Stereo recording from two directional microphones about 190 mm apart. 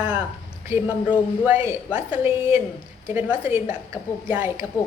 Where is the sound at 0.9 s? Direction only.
25° left (ahead or behind).